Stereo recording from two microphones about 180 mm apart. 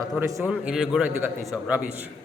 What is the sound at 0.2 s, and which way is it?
Speech, 15° right (ahead or behind).